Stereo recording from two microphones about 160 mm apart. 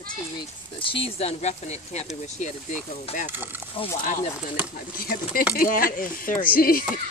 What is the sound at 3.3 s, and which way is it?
Speech, 10° right (ahead or behind).